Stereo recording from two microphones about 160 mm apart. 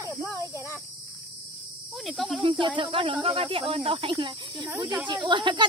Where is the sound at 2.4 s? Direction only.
35° right (ahead or behind).